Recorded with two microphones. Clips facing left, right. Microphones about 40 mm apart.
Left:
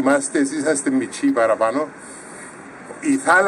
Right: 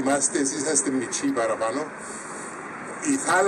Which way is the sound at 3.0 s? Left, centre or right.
Centre.